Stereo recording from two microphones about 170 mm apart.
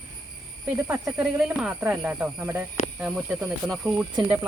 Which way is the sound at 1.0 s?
5° right (ahead or behind).